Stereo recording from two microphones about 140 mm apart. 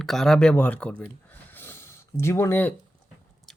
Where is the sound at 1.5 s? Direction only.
15° left (ahead or behind).